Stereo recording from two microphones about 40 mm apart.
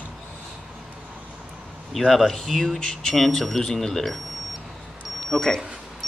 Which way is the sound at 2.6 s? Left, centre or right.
Centre.